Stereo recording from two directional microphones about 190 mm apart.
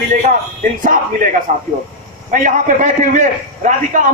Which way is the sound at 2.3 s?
40° right (ahead or behind).